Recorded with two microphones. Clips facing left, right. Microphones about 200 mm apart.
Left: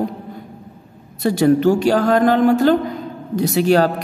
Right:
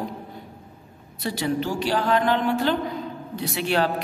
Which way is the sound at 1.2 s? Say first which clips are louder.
Left 12 dB; 50° left (ahead or behind).